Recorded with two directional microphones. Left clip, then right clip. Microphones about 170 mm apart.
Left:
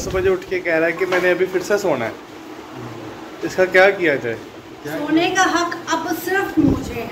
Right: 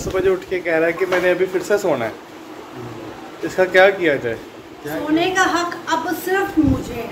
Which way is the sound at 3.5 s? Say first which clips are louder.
Even; centre (ahead or behind).